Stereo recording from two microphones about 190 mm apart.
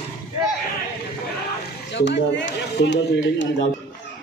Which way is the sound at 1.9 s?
70° left (ahead or behind).